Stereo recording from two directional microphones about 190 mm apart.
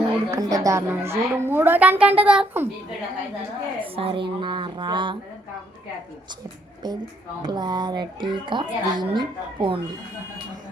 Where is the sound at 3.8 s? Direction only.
30° right (ahead or behind).